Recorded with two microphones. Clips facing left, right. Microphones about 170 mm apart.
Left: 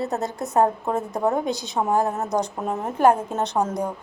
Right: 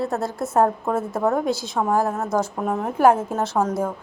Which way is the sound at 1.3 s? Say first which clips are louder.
Right 2 dB; centre (ahead or behind).